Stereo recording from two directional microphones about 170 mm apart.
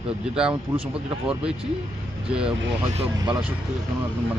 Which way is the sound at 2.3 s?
5° right (ahead or behind).